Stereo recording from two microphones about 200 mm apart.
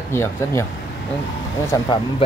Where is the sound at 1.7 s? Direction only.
20° left (ahead or behind).